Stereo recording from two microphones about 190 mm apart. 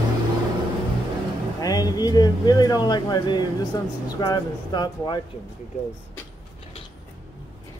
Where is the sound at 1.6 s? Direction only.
20° left (ahead or behind).